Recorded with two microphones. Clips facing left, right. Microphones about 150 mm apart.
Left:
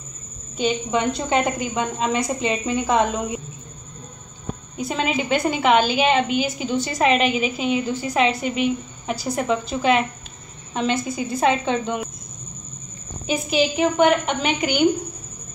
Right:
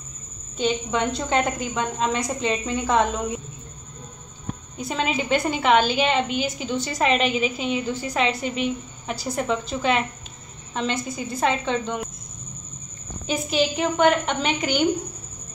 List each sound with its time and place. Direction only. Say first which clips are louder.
0.6 s a woman's voice: left 2 dB; 10° left (ahead or behind)
4.7 s a woman's voice: left 2 dB; 5° left (ahead or behind)
13.3 s a woman's voice: left 2 dB; 5° left (ahead or behind)